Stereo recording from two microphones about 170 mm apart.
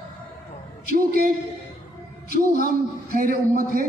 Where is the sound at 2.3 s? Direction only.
60° right (ahead or behind).